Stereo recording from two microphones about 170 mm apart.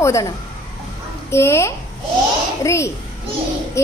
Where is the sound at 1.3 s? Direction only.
15° left (ahead or behind).